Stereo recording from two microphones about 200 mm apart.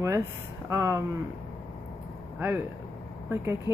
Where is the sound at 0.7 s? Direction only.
15° right (ahead or behind).